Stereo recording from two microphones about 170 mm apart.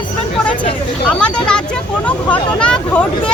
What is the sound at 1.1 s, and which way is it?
Speech, 5° left (ahead or behind).